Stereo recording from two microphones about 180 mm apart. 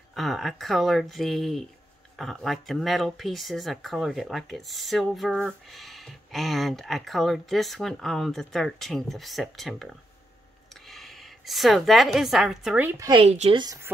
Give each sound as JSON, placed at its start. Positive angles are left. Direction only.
{"t": 0.1, "sound": "speech", "side_deg": 0}
{"t": 10.9, "sound": "a woman's voice", "side_deg": 0}
{"t": 13.0, "sound": "speech", "side_deg": -30}
{"t": 13.6, "sound": "speech", "side_deg": -20}